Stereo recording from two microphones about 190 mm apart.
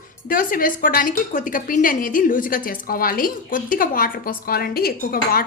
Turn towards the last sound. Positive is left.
turn(degrees=50)  # may be behind; listen again after turning